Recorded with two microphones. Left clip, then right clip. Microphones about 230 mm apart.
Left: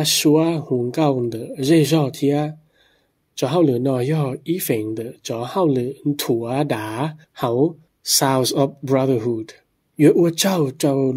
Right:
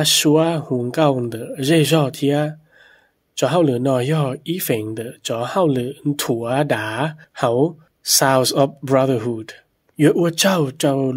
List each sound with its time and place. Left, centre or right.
0.0 s speech: right